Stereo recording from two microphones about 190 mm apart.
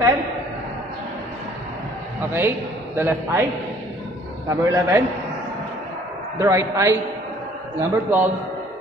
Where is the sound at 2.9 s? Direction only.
10° right (ahead or behind).